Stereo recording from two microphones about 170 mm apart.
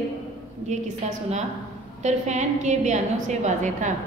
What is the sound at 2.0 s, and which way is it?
A woman's voice, 45° right (ahead or behind).